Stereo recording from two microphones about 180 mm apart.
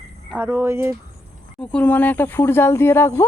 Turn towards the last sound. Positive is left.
turn(degrees=15)  # may be behind; listen again after turning